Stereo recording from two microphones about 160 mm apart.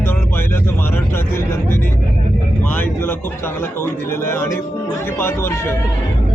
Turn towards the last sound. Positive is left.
turn(degrees=15)  # may be behind; listen again after turning